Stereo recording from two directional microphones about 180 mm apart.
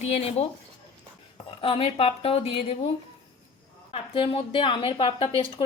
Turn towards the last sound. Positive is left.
turn(degrees=30)  # may be behind; listen again after turning